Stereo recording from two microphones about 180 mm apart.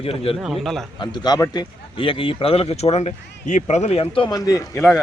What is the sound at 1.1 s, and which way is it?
A man's voice, 20° left (ahead or behind).